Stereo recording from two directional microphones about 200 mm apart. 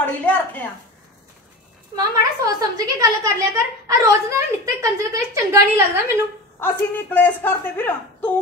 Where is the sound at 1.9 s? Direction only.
20° right (ahead or behind).